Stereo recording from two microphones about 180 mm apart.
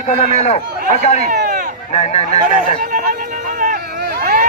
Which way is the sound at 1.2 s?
45° right (ahead or behind).